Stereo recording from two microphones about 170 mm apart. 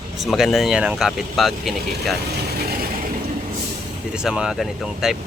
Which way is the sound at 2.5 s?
65° right (ahead or behind).